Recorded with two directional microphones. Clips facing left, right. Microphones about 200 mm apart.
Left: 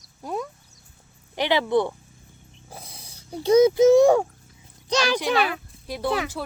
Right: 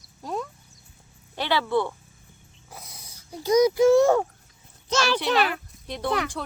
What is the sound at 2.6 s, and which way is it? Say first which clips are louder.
Dog: left 2 dB; 30° left (ahead or behind).